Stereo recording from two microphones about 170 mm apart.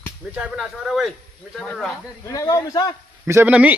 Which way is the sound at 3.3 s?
10° right (ahead or behind).